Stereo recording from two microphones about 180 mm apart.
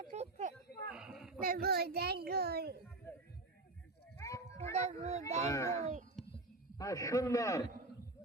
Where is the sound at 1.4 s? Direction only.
55° right (ahead or behind).